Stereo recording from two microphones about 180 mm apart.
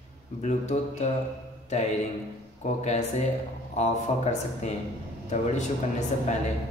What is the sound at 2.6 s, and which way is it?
A man's voice, 40° left (ahead or behind).